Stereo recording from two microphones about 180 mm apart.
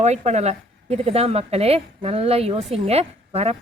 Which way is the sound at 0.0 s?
40° right (ahead or behind).